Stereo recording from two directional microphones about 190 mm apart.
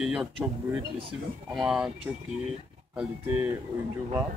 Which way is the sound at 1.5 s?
5° right (ahead or behind).